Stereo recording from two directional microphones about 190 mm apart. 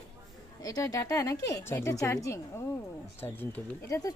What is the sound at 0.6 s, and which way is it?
Speech, 20° left (ahead or behind).